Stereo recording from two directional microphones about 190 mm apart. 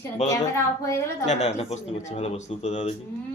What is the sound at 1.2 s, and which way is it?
Speech, 35° left (ahead or behind).